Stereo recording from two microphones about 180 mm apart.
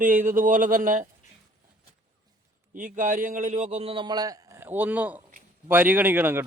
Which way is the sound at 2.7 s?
50° right (ahead or behind).